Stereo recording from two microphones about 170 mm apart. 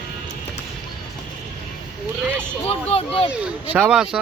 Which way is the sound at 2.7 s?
35° left (ahead or behind).